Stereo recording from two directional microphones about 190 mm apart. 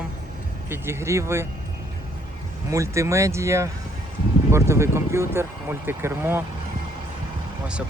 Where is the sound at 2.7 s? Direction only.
15° right (ahead or behind).